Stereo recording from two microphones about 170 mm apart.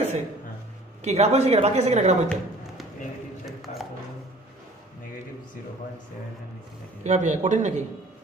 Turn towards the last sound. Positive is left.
turn(degrees=-45)  # may be behind; listen again after turning